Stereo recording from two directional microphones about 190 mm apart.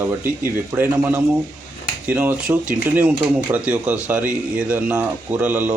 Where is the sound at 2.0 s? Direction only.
10° right (ahead or behind).